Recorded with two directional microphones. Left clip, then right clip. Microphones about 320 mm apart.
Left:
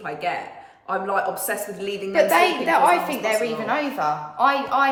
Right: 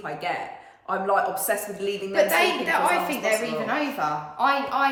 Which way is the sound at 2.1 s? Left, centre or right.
Centre.